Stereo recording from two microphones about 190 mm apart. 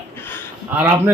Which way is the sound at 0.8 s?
10° right (ahead or behind).